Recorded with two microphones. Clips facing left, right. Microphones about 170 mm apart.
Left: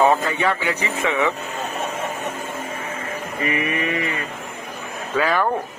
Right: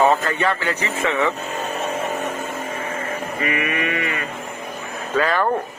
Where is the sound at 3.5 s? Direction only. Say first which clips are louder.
Left 2 dB; 30° left (ahead or behind).